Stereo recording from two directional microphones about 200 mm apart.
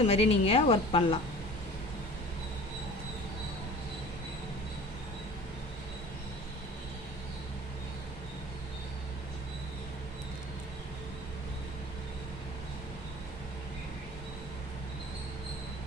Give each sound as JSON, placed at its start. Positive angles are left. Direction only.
{"t": 0.1, "sound": "a woman's voice", "side_deg": 30}